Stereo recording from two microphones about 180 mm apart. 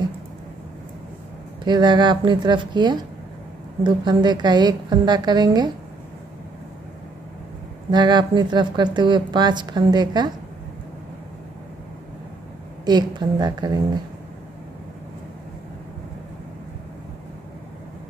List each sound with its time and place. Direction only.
1.6 s a woman's voice: 25° right (ahead or behind)
7.9 s a woman's voice: 25° right (ahead or behind)
12.8 s a woman's voice: 25° right (ahead or behind)